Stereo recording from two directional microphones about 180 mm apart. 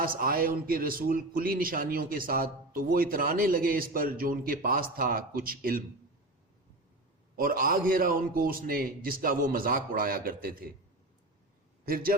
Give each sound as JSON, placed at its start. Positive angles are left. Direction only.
{"t": 0.0, "sound": "speech", "side_deg": -55}
{"t": 7.3, "sound": "speech", "side_deg": -55}
{"t": 11.9, "sound": "speech", "side_deg": -55}